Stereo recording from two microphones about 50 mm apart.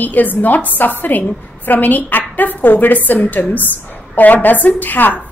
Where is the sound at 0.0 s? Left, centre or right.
Left.